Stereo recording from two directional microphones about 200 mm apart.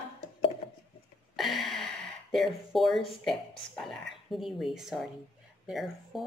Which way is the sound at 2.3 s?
Centre (ahead or behind).